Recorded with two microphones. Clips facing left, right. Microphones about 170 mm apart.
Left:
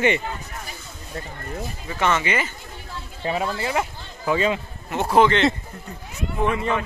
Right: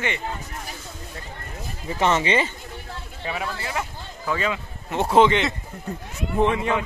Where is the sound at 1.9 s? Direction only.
30° right (ahead or behind).